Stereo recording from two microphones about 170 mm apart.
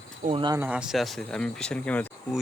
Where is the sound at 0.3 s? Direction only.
25° right (ahead or behind).